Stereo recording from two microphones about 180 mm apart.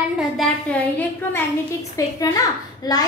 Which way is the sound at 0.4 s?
10° left (ahead or behind).